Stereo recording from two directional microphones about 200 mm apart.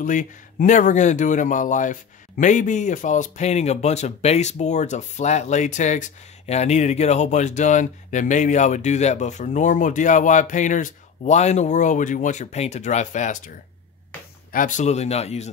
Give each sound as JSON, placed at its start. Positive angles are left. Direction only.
{"t": 0.0, "sound": "speech", "side_deg": 40}
{"t": 14.5, "sound": "speech", "side_deg": 40}